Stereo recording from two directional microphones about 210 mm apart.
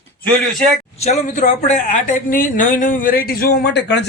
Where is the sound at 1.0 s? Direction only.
35° left (ahead or behind).